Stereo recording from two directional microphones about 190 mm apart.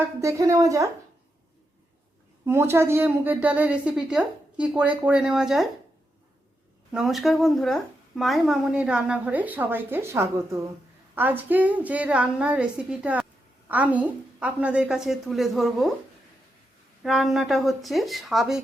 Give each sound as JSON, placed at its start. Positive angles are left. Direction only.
{"t": 0.2, "sound": "a woman's voice", "side_deg": -15}
{"t": 2.4, "sound": "a woman's voice", "side_deg": -15}
{"t": 6.9, "sound": "a woman's voice", "side_deg": 0}
{"t": 17.0, "sound": "speech", "side_deg": 0}